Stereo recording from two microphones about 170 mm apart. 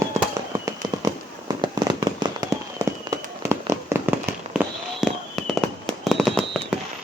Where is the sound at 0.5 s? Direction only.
20° right (ahead or behind).